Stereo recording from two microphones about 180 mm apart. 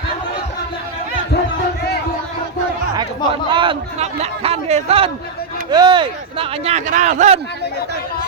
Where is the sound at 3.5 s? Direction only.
25° right (ahead or behind).